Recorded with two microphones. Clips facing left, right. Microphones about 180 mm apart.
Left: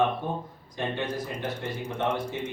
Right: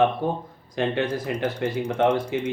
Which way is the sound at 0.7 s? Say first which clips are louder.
Right 6 dB; 85° right.